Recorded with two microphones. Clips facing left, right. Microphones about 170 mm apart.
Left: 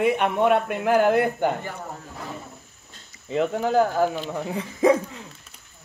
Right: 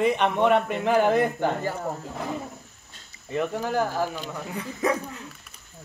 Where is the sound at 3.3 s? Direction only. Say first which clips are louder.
Left 5 dB; 20° left (ahead or behind).